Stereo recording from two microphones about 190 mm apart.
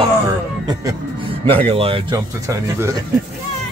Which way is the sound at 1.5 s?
30° right (ahead or behind).